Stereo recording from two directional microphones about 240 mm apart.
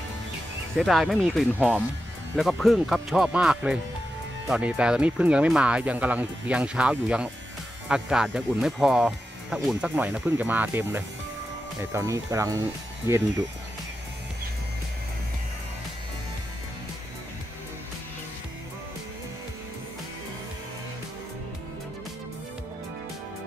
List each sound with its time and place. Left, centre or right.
0.7 s speech: centre